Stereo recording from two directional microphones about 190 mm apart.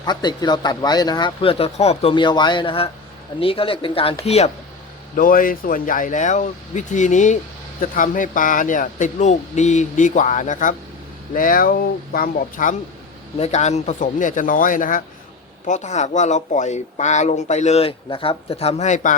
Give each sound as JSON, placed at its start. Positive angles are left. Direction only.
{"t": 0.0, "sound": "speech", "side_deg": 20}
{"t": 5.1, "sound": "speech", "side_deg": 45}
{"t": 13.3, "sound": "speech", "side_deg": 35}